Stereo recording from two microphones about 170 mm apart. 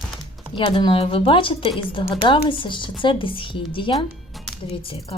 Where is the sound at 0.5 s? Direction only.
30° left (ahead or behind).